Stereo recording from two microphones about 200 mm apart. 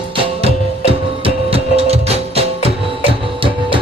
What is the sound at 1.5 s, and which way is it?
Music, 30° right (ahead or behind).